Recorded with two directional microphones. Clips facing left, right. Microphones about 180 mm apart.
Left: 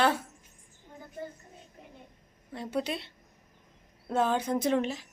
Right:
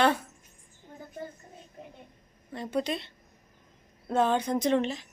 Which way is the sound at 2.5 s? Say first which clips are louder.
Right 2 dB; 5° left (ahead or behind).